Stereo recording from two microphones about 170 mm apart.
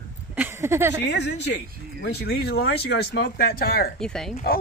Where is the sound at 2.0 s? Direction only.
70° left (ahead or behind).